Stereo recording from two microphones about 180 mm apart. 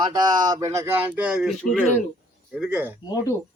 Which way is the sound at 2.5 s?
5° right (ahead or behind).